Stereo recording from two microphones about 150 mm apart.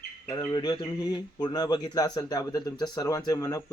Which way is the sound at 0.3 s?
30° left (ahead or behind).